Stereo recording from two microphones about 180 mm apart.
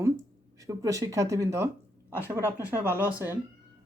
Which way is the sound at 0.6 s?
20° right (ahead or behind).